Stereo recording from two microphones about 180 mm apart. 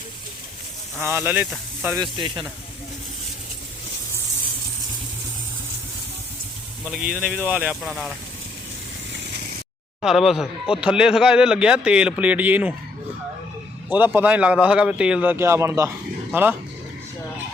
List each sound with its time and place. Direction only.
0.9 s a man's voice: 10° right (ahead or behind)
2.0 s speech: 25° right (ahead or behind)
7.1 s a man's voice: 5° right (ahead or behind)
10.0 s speech: centre (ahead or behind)
13.9 s a man's voice: 10° right (ahead or behind)